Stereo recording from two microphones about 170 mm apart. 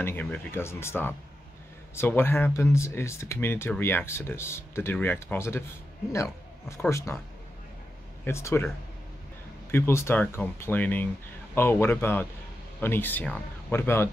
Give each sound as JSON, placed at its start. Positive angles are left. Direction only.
{"t": 0.0, "sound": "speech", "side_deg": 10}
{"t": 6.8, "sound": "speech", "side_deg": 15}
{"t": 8.3, "sound": "speech", "side_deg": 15}
{"t": 9.7, "sound": "speech", "side_deg": 15}